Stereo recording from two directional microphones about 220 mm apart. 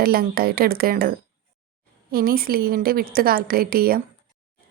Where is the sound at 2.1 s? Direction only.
40° right (ahead or behind).